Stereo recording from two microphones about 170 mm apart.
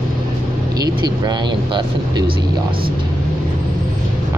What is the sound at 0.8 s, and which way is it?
Speech, 25° right (ahead or behind).